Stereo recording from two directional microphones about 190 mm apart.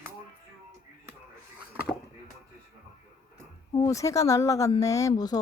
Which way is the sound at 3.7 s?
15° left (ahead or behind).